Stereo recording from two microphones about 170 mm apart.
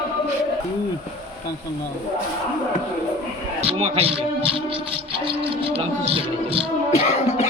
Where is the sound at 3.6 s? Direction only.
35° right (ahead or behind).